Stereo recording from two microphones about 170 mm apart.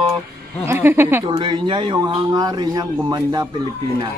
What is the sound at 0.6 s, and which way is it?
Speech, 15° right (ahead or behind).